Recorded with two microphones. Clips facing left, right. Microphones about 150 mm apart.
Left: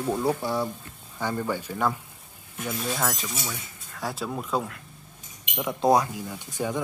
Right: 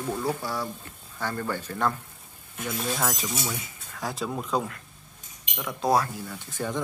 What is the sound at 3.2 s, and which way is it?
Speech, 15° right (ahead or behind).